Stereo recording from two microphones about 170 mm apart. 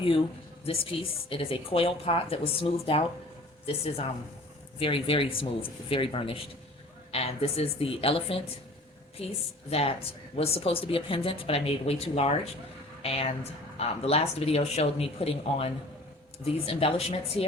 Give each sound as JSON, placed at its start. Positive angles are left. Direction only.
{"t": 0.6, "sound": "a woman's voice", "side_deg": 35}